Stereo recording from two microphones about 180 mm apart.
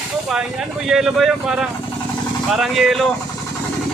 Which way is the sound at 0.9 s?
Centre (ahead or behind).